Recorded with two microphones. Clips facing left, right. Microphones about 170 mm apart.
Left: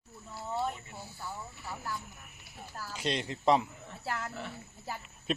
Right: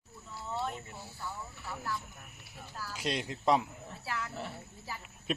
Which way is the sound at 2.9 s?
Centre (ahead or behind).